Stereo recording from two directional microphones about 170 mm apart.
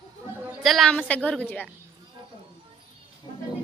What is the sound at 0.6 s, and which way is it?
A woman's voice, centre (ahead or behind).